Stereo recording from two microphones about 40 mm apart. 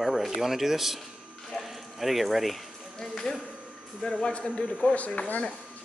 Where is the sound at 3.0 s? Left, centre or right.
Centre.